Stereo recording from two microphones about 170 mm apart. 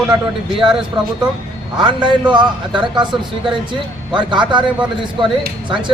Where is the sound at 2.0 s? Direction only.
30° right (ahead or behind).